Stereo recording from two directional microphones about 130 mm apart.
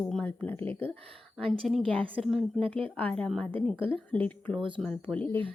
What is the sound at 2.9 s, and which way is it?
Speech, 10° left (ahead or behind).